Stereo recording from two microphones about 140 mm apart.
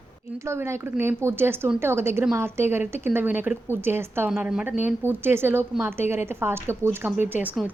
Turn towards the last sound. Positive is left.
turn(degrees=-15)  # may be behind; listen again after turning